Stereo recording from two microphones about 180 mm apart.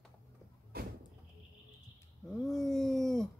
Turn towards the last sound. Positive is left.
turn(degrees=0)  # may be behind; listen again after turning